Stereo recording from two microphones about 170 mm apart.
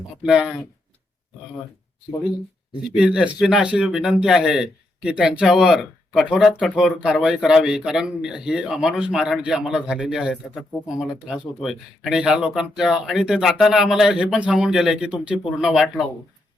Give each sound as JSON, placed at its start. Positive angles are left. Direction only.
{"t": 0.2, "sound": "speech", "side_deg": -5}
{"t": 2.9, "sound": "speech", "side_deg": -5}